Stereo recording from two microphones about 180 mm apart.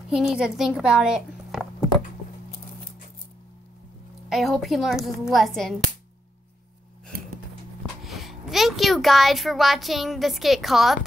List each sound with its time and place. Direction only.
0.1 s a woman's voice: 5° right (ahead or behind)
4.3 s a woman's voice: centre (ahead or behind)
8.0 s a child's voice: centre (ahead or behind)